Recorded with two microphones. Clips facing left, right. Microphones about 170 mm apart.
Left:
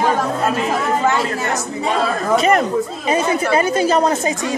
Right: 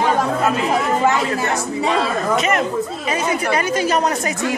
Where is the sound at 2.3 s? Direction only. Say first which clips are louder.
Left 6 dB; 35° left (ahead or behind).